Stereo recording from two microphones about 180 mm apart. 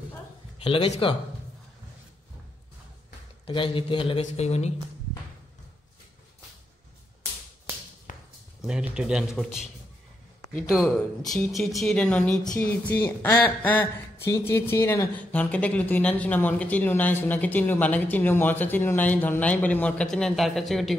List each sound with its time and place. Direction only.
0.7 s speech: 35° left (ahead or behind)
3.4 s speech: 30° left (ahead or behind)
8.1 s a sound: 45° left (ahead or behind)
8.5 s speech: 5° right (ahead or behind)
10.7 s speech: centre (ahead or behind)